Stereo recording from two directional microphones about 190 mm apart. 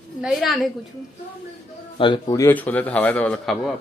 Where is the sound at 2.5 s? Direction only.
10° left (ahead or behind).